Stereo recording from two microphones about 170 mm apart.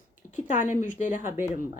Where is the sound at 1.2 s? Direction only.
15° right (ahead or behind).